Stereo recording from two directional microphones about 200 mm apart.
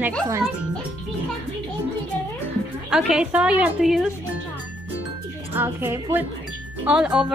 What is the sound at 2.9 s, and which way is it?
Speech, 5° right (ahead or behind).